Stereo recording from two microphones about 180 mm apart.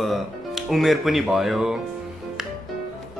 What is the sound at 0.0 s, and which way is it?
Speech, centre (ahead or behind).